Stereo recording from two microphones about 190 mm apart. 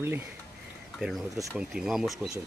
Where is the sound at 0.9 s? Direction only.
Centre (ahead or behind).